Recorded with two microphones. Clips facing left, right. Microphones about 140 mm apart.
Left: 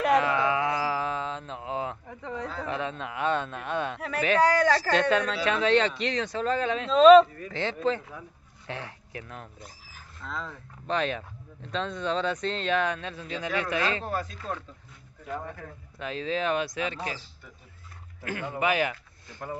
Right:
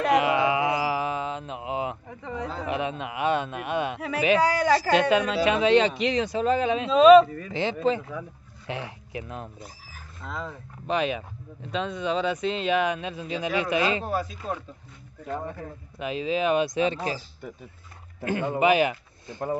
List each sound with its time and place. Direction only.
0.1 s a sound: 10° right (ahead or behind)
2.5 s a man's voice: 15° right (ahead or behind)
15.2 s a man's voice: 20° right (ahead or behind)
18.2 s speech: 20° right (ahead or behind)